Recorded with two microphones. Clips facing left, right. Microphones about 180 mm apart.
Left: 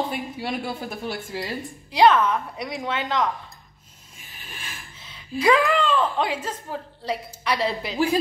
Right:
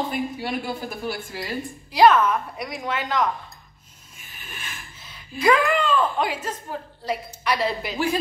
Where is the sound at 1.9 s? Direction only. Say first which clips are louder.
Right 1 dB; 25° left (ahead or behind).